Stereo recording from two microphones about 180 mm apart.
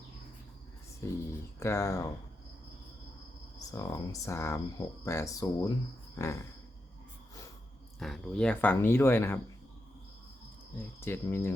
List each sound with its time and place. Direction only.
1.5 s speech: 15° left (ahead or behind)
3.7 s speech: 15° left (ahead or behind)
7.9 s speech: centre (ahead or behind)
10.8 s speech: 10° left (ahead or behind)